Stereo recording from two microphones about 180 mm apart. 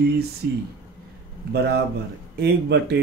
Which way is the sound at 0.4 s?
65° right (ahead or behind).